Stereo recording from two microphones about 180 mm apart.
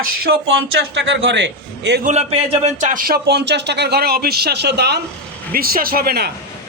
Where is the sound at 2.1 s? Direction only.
35° right (ahead or behind); by 5.0 s 65° right (ahead or behind).